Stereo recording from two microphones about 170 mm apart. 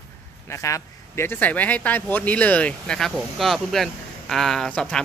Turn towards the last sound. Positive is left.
turn(degrees=5)  # may be behind; listen again after turning